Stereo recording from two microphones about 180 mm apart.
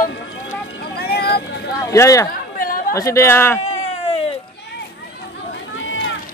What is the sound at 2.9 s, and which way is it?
Speech, 15° left (ahead or behind).